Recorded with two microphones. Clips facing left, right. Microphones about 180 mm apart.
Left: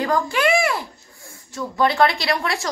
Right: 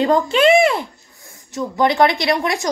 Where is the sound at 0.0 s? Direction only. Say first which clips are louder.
Right 6 dB; 25° right (ahead or behind).